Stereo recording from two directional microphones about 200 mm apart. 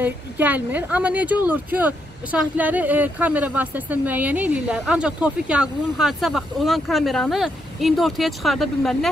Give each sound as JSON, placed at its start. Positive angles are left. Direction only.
{"t": 0.0, "sound": "speech", "side_deg": -10}